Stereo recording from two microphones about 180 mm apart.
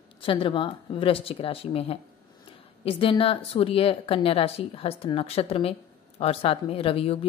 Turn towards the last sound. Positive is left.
turn(degrees=30)  # may be behind; listen again after turning